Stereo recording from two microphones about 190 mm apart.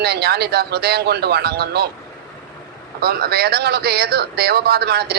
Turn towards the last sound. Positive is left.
turn(degrees=-55)  # may be behind; listen again after turning